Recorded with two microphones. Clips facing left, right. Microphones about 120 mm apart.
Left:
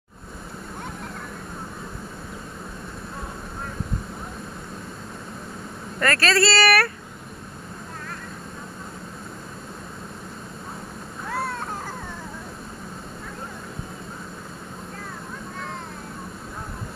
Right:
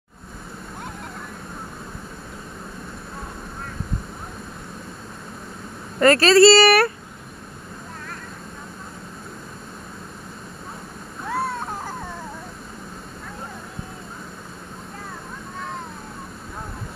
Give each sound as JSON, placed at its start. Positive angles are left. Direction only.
{"t": 5.9, "sound": "speech", "side_deg": -25}